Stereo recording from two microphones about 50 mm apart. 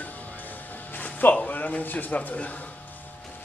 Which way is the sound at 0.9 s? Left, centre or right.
Left.